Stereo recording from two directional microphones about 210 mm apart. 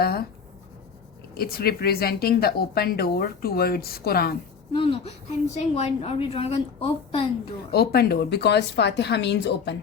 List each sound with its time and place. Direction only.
0.0 s speech: 45° left (ahead or behind)
1.4 s a woman's voice: 45° left (ahead or behind)
4.7 s a woman's voice: 25° left (ahead or behind)
7.7 s a woman's voice: 50° left (ahead or behind)